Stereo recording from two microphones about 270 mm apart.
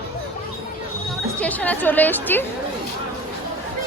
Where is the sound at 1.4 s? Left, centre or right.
Centre.